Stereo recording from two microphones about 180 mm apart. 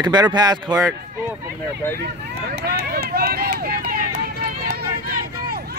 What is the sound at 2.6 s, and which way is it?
Speech, 60° right (ahead or behind).